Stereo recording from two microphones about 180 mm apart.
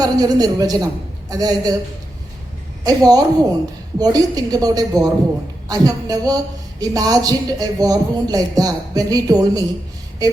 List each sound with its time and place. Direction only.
0.0 s a woman's voice: 20° right (ahead or behind)
2.8 s a woman's voice: 20° right (ahead or behind)